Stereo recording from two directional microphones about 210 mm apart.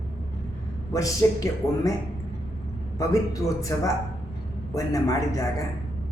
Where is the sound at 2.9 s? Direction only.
15° left (ahead or behind).